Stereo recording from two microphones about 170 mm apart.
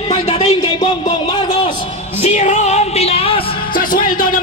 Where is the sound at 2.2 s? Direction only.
40° left (ahead or behind).